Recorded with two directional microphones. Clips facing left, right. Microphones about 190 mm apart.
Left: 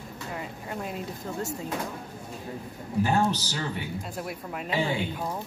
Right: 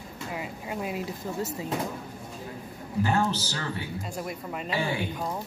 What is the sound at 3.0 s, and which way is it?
Speech, 15° left (ahead or behind).